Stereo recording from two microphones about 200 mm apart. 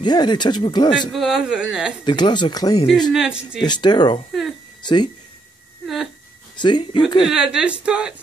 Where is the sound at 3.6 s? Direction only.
20° left (ahead or behind).